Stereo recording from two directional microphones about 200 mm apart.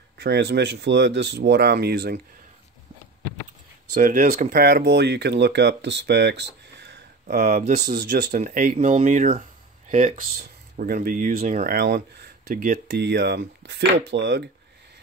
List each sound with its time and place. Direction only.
0.2 s speech: 55° right (ahead or behind)
3.9 s speech: 45° right (ahead or behind)
7.8 s speech: 55° right (ahead or behind)
8.3 s speech: 45° right (ahead or behind)